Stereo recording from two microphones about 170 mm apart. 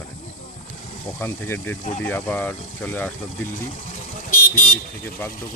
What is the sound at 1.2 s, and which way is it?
Speech, 15° left (ahead or behind).